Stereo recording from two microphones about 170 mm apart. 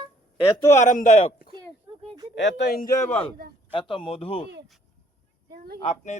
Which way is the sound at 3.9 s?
30° left (ahead or behind).